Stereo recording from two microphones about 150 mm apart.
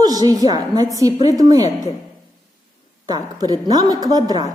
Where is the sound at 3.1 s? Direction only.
25° right (ahead or behind).